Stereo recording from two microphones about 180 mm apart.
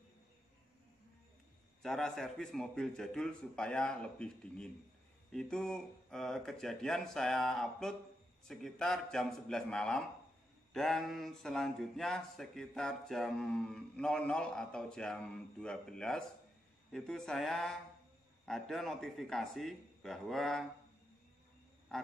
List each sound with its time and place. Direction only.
1.8 s speech: centre (ahead or behind)